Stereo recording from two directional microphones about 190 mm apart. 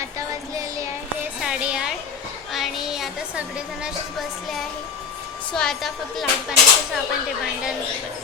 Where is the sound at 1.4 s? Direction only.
5° right (ahead or behind).